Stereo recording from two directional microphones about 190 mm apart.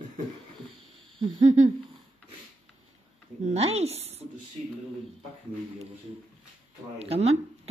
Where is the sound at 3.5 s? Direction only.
35° right (ahead or behind).